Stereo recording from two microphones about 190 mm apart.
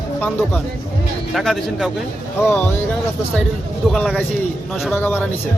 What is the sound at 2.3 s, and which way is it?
Speech, 10° left (ahead or behind).